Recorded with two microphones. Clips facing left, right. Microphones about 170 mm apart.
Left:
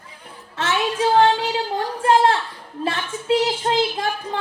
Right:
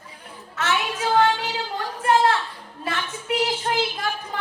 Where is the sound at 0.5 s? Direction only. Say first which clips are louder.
Left 3 dB; 30° left (ahead or behind).